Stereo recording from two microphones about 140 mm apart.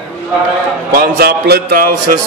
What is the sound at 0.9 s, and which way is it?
A man's voice, 90° right.